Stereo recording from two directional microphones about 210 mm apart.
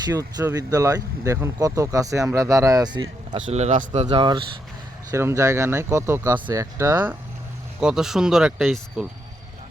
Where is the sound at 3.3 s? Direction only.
30° right (ahead or behind).